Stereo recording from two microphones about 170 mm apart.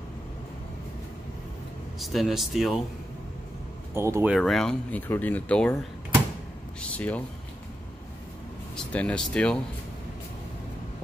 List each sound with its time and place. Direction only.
2.0 s speech: centre (ahead or behind)
3.9 s speech: 15° right (ahead or behind)
4.3 s speech: centre (ahead or behind)
8.7 s speech: 5° left (ahead or behind)